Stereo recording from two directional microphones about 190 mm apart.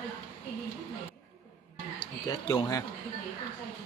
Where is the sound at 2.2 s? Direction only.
20° left (ahead or behind).